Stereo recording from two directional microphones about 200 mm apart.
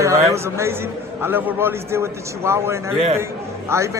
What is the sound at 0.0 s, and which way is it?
A man's voice, 15° right (ahead or behind).